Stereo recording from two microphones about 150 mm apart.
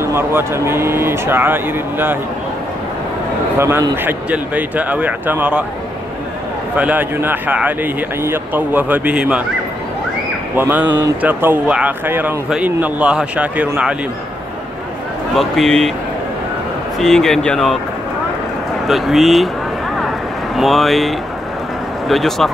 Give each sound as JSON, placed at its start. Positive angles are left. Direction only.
{"t": 0.0, "sound": "speech", "side_deg": -15}
{"t": 3.5, "sound": "speech", "side_deg": -20}
{"t": 6.8, "sound": "speech", "side_deg": -10}
{"t": 10.5, "sound": "speech", "side_deg": -10}
{"t": 15.3, "sound": "speech", "side_deg": 0}
{"t": 17.0, "sound": "speech", "side_deg": 0}
{"t": 18.9, "sound": "speech", "side_deg": 0}
{"t": 20.5, "sound": "speech", "side_deg": 0}